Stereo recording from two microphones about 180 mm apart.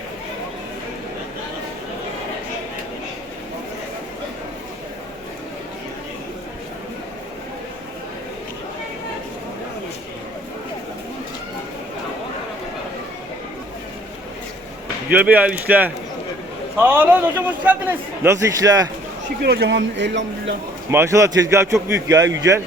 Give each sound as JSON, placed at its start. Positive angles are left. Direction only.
{"t": 15.1, "sound": "a man's voice", "side_deg": -10}
{"t": 19.4, "sound": "speech", "side_deg": -65}
{"t": 20.9, "sound": "a man's voice", "side_deg": -15}